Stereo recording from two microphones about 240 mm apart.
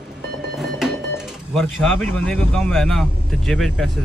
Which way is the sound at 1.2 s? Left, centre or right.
Centre.